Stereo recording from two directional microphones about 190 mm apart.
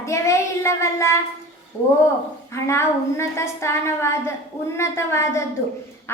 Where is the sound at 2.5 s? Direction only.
15° left (ahead or behind).